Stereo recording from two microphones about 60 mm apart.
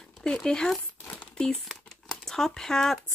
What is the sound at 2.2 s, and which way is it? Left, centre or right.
Speech, centre.